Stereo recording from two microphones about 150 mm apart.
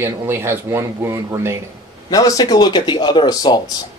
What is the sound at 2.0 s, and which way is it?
Speech, 25° left (ahead or behind).